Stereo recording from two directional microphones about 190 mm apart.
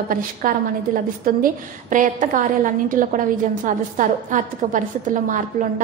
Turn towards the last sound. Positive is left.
turn(degrees=-45)  # may be behind; listen again after turning